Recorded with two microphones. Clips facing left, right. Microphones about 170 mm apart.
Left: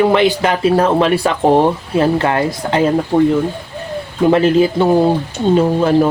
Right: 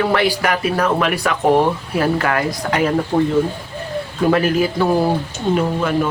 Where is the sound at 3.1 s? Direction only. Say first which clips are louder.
Left 5 dB; 5° left (ahead or behind).